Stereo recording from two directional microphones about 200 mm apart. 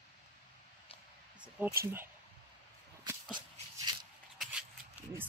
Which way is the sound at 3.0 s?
20° right (ahead or behind).